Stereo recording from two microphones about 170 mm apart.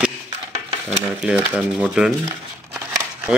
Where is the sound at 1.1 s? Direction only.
5° right (ahead or behind).